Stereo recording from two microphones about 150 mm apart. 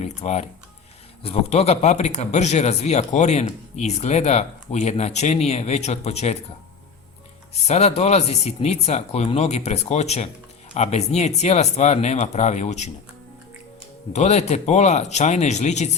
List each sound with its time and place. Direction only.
0.0 s speech: 45° left (ahead or behind)
7.7 s speech: 45° left (ahead or behind)
14.1 s speech: 45° left (ahead or behind)